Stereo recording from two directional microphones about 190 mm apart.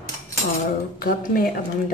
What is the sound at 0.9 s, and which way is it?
Speech, 50° left (ahead or behind).